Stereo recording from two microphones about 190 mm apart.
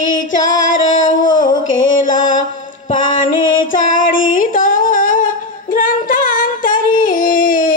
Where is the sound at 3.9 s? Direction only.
45° left (ahead or behind).